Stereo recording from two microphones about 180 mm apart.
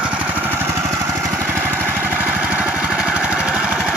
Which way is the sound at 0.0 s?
5° right (ahead or behind).